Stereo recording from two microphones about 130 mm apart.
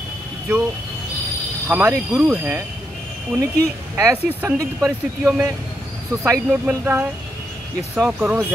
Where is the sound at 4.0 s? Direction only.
15° right (ahead or behind).